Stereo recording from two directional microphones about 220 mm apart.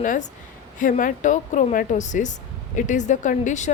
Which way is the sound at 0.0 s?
35° left (ahead or behind).